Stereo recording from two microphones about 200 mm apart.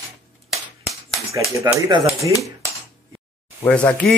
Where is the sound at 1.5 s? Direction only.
15° right (ahead or behind).